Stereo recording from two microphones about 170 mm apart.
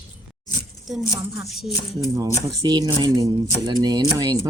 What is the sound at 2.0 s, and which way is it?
Speech, 20° right (ahead or behind).